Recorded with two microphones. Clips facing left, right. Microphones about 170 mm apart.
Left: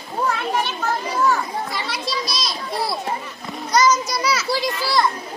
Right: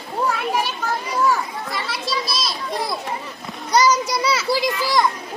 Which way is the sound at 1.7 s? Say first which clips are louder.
Right 1 dB; centre (ahead or behind).